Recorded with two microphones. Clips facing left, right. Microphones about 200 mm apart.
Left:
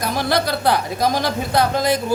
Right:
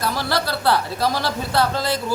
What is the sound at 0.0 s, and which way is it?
A woman's voice, 15° left (ahead or behind).